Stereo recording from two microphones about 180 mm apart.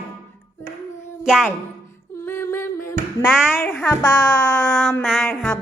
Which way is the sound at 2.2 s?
10° left (ahead or behind).